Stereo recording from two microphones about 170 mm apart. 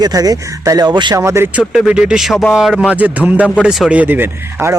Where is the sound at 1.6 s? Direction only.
Centre (ahead or behind).